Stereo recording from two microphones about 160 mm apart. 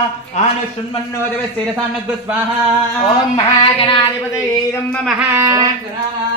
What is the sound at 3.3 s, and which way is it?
Speech, 30° left (ahead or behind).